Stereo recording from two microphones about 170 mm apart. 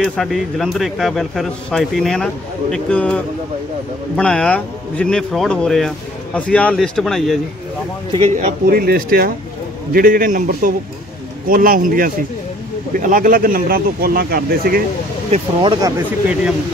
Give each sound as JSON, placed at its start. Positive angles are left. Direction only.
{"t": 0.0, "sound": "speech", "side_deg": 0}
{"t": 4.2, "sound": "speech", "side_deg": 5}
{"t": 8.4, "sound": "a man's voice", "side_deg": -55}
{"t": 15.3, "sound": "speech", "side_deg": -30}